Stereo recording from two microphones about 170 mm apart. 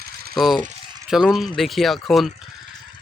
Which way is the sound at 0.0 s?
65° right (ahead or behind).